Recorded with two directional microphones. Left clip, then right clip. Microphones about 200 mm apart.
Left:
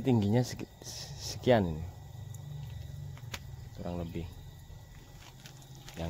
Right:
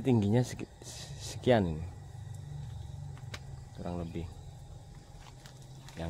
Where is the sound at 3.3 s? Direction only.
35° left (ahead or behind).